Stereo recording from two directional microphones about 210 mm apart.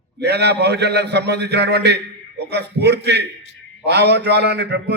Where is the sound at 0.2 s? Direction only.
50° right (ahead or behind).